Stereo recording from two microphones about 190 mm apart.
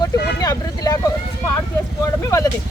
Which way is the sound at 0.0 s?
20° left (ahead or behind).